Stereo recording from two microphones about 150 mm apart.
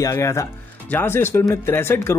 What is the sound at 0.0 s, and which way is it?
Speech, 20° left (ahead or behind).